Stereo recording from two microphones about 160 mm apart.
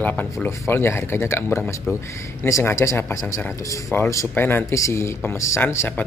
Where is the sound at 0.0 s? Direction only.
10° left (ahead or behind).